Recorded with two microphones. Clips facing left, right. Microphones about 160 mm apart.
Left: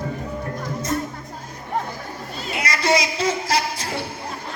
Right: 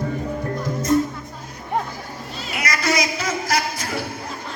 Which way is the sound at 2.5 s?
25° left (ahead or behind).